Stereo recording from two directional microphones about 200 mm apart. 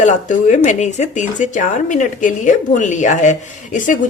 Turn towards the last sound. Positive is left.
turn(degrees=40)  # may be behind; listen again after turning